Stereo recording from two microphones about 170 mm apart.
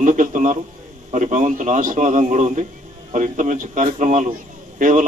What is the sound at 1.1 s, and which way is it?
A man's voice, 45° right (ahead or behind).